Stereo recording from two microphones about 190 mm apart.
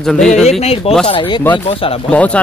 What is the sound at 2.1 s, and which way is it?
Speech, 5° left (ahead or behind).